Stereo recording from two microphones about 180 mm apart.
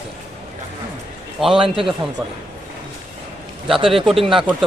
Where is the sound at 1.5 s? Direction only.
30° right (ahead or behind).